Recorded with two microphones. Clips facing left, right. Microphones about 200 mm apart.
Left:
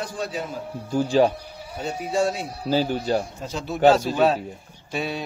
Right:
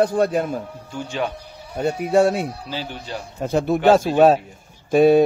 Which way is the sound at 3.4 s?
55° right (ahead or behind).